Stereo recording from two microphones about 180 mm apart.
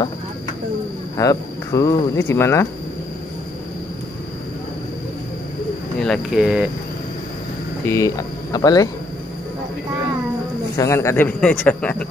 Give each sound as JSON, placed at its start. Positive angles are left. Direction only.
{"t": 1.1, "sound": "speech", "side_deg": 20}
{"t": 5.9, "sound": "speech", "side_deg": 5}
{"t": 7.8, "sound": "speech", "side_deg": 15}
{"t": 10.8, "sound": "speech", "side_deg": 15}